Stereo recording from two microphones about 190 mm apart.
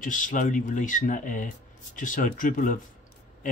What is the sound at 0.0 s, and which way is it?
Speech, 45° left (ahead or behind).